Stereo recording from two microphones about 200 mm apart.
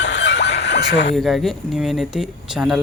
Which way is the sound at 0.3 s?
30° left (ahead or behind).